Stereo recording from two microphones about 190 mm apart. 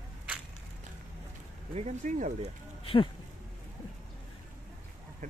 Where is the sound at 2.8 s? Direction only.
30° left (ahead or behind).